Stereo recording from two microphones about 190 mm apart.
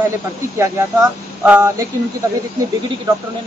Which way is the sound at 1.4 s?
10° right (ahead or behind).